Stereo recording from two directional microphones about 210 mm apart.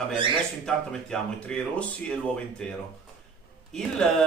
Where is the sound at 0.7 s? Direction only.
5° left (ahead or behind).